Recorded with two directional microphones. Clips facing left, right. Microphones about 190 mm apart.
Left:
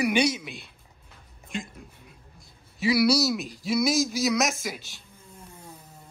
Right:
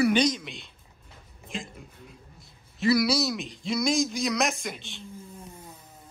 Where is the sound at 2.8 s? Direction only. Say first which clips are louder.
Left 1 dB; 10° left (ahead or behind).